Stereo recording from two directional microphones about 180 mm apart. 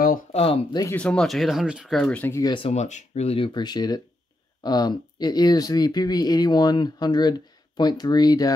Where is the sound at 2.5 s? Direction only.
35° left (ahead or behind).